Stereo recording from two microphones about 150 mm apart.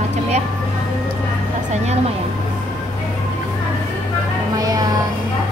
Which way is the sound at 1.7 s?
45° right (ahead or behind).